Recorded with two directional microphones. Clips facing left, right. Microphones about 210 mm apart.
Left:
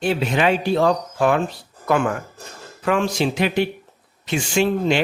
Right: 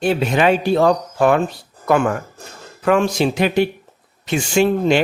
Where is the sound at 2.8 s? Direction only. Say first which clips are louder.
Right 4 dB; 45° right (ahead or behind).